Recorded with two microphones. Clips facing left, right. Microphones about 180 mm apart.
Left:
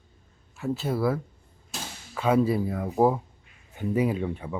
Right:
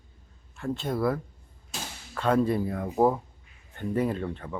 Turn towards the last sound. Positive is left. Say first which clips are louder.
# left 2 dB
turn(degrees=10)  # may be behind; listen again after turning